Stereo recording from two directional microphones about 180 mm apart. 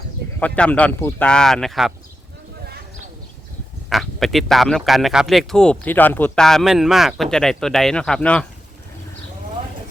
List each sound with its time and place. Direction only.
0.3 s speech: 10° left (ahead or behind)
3.8 s speech: centre (ahead or behind)